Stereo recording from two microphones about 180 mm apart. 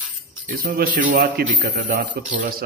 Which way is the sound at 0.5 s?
50° right (ahead or behind).